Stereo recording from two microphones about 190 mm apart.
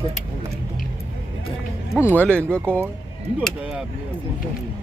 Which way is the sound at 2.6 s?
10° right (ahead or behind).